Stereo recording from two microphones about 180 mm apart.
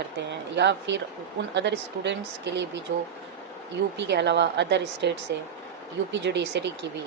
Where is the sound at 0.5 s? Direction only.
75° right (ahead or behind).